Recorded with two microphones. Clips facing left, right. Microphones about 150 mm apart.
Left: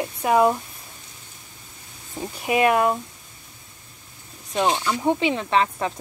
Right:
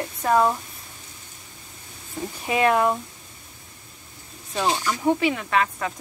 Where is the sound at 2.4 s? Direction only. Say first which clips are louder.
Left 1 dB; 15° left (ahead or behind).